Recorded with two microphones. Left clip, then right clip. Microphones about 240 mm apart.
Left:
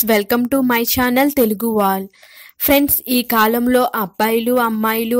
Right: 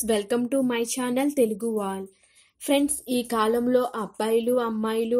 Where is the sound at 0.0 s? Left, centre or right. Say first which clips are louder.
Left 9 dB; left.